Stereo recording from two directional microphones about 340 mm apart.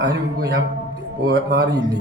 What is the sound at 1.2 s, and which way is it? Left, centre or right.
Speech, right.